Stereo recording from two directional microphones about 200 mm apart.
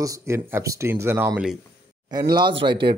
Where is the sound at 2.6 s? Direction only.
25° right (ahead or behind).